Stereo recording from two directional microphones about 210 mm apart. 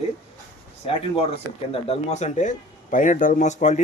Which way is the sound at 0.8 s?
30° left (ahead or behind).